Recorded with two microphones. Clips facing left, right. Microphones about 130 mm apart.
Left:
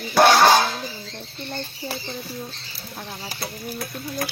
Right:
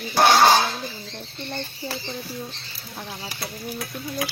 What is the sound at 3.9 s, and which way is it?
Sewing machine, 50° left (ahead or behind).